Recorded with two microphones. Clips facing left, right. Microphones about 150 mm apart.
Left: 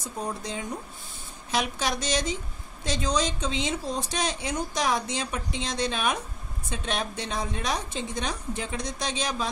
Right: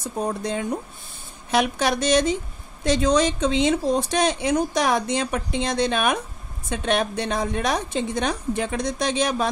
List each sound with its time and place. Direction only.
0.2 s speech: 60° right (ahead or behind)